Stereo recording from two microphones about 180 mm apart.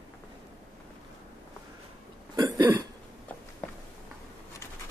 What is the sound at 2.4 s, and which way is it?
Cough, 20° right (ahead or behind).